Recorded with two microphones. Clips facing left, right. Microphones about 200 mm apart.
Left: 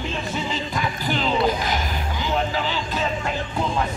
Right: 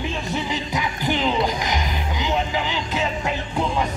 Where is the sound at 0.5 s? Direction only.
15° right (ahead or behind).